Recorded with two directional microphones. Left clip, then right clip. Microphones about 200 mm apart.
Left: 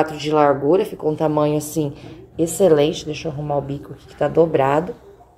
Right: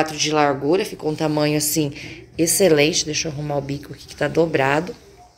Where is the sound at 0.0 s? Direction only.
10° left (ahead or behind).